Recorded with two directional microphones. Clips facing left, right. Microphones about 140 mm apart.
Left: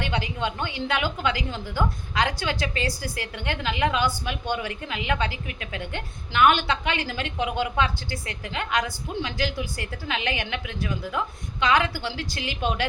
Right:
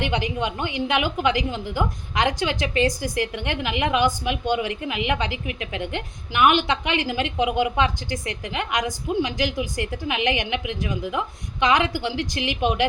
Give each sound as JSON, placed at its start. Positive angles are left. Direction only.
{"t": 0.0, "sound": "a woman's voice", "side_deg": -15}